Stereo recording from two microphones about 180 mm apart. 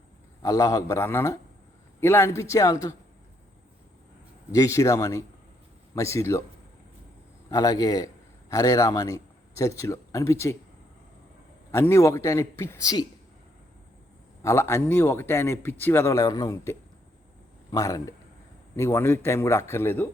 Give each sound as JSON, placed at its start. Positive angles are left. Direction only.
{"t": 0.4, "sound": "a man's voice", "side_deg": 20}
{"t": 4.5, "sound": "a man's voice", "side_deg": 20}
{"t": 7.5, "sound": "a man's voice", "side_deg": 20}
{"t": 11.7, "sound": "a man's voice", "side_deg": 15}
{"t": 14.4, "sound": "a man's voice", "side_deg": 15}